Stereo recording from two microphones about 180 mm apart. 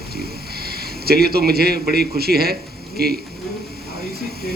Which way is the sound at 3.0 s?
60° right (ahead or behind).